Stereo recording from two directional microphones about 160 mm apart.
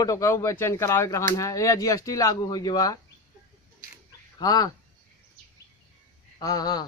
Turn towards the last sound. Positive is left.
turn(degrees=25)  # may be behind; listen again after turning